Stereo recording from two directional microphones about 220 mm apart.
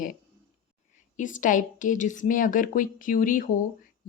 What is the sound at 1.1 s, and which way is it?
A woman's voice, 35° left (ahead or behind).